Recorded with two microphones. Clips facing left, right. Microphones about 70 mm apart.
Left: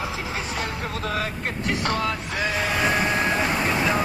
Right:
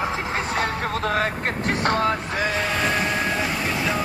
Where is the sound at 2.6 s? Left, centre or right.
Centre.